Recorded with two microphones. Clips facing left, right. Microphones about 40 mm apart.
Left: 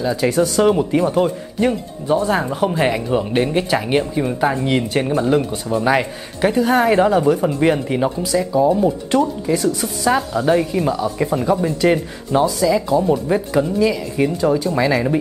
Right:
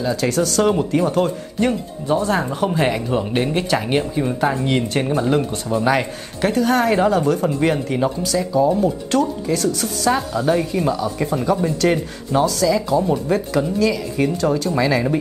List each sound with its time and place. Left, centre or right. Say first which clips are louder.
0.0 s speech: left 2 dB; centre